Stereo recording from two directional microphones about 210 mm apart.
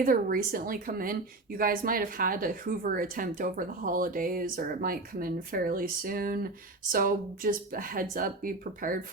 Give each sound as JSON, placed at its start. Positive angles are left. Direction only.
{"t": 0.0, "sound": "speech", "side_deg": -40}